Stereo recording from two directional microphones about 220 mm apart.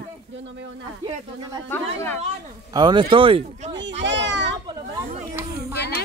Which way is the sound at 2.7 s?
20° right (ahead or behind).